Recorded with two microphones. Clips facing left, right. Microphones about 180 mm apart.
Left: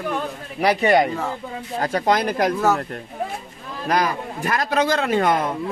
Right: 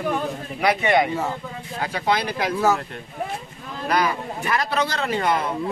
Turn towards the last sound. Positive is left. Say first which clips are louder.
# left 4 dB
turn(degrees=50)  # may be behind; listen again after turning